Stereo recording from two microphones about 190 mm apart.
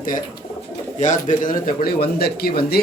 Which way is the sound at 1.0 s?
40° left (ahead or behind).